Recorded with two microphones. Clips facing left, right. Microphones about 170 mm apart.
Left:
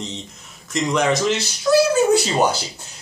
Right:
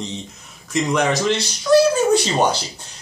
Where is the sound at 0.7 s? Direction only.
Centre (ahead or behind).